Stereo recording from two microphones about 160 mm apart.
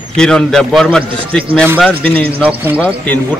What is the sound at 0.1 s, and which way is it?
A man's voice, 5° left (ahead or behind).